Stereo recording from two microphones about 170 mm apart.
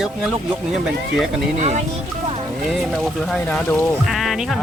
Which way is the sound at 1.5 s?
45° right (ahead or behind).